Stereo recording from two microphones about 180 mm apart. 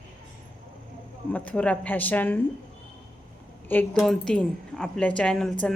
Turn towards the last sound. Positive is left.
turn(degrees=5)  # may be behind; listen again after turning